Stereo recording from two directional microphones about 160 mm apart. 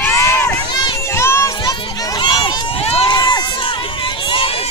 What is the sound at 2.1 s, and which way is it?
Run, 30° left (ahead or behind).